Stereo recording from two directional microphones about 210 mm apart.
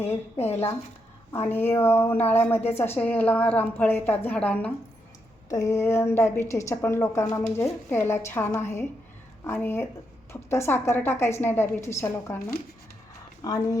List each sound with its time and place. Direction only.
1.3 s a woman's voice: 10° left (ahead or behind)
13.4 s a woman's voice: 15° left (ahead or behind)